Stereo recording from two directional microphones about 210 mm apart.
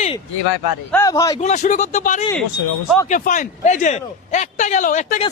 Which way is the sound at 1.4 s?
35° left (ahead or behind).